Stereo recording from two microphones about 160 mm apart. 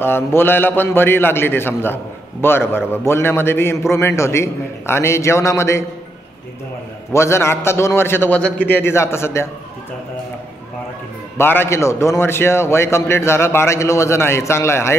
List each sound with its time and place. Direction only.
0.0 s a man's voice: 15° left (ahead or behind)
7.1 s a man's voice: 15° left (ahead or behind)
11.3 s a man's voice: 15° left (ahead or behind)